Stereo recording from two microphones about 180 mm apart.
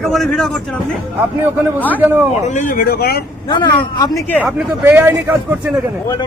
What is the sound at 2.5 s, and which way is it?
Speech, 45° left (ahead or behind).